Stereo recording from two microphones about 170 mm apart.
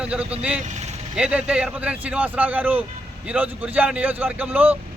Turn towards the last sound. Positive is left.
turn(degrees=-10)  # may be behind; listen again after turning